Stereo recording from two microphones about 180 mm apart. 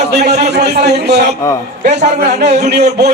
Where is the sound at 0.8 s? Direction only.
65° right (ahead or behind).